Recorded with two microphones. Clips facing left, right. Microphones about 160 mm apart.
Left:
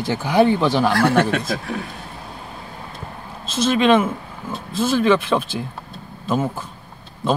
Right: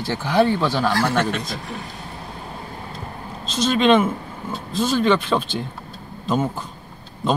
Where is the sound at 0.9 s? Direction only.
55° left (ahead or behind).